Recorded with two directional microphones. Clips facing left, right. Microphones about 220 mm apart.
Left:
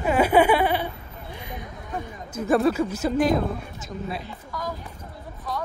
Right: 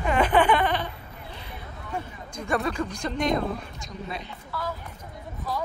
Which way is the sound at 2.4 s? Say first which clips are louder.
Left 7 dB; 5° left (ahead or behind).